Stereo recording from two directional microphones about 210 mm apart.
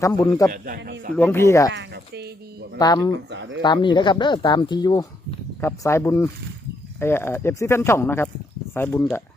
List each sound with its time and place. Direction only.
0.0 s speech: 15° left (ahead or behind)
0.5 s a man's voice: 45° right (ahead or behind)
1.1 s speech: 10° left (ahead or behind)
1.7 s a sound: 55° right (ahead or behind)
2.7 s speech: 20° left (ahead or behind)
3.2 s speech: 55° right (ahead or behind)
3.6 s speech: 20° left (ahead or behind)